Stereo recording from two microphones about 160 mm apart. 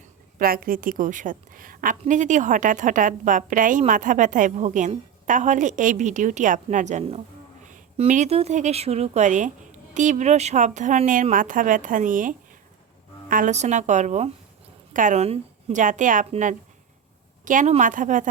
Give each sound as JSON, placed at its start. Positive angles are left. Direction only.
{"t": 0.3, "sound": "a woman's voice", "side_deg": -65}